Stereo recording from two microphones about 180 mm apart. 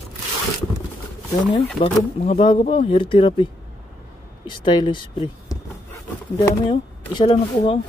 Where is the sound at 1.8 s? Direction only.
35° left (ahead or behind).